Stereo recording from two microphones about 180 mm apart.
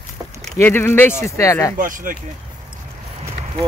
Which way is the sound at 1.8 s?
50° right (ahead or behind).